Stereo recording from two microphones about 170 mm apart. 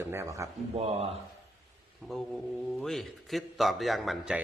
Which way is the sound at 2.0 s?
5° left (ahead or behind).